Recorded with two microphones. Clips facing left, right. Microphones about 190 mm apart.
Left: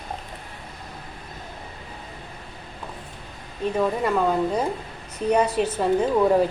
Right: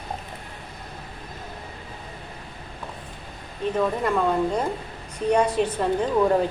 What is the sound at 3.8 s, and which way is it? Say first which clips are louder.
A woman's voice: left 1 dB; 5° left (ahead or behind).